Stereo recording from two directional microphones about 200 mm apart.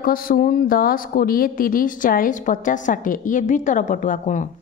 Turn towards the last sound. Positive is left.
turn(degrees=40)  # may be behind; listen again after turning